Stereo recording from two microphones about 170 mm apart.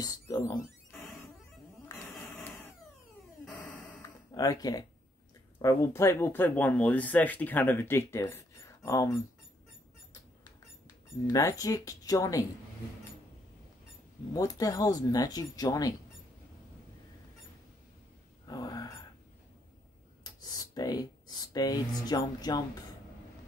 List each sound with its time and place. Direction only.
0.0 s music: 20° left (ahead or behind)
4.3 s speech: 20° left (ahead or behind)
11.2 s speech: 20° left (ahead or behind)
14.3 s speech: 20° left (ahead or behind)
18.5 s gasp: 20° left (ahead or behind)
20.3 s a sound: 20° left (ahead or behind)
21.5 s speech: 20° left (ahead or behind)